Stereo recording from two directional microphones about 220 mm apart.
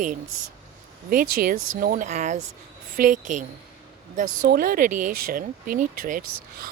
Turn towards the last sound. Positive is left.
turn(degrees=-35)  # may be behind; listen again after turning